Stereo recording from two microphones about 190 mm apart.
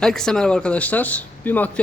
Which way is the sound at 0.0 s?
5° left (ahead or behind).